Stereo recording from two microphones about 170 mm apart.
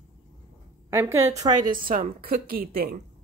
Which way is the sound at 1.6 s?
55° right (ahead or behind).